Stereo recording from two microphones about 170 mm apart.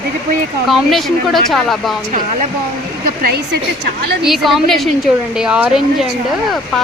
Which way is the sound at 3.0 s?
65° right (ahead or behind).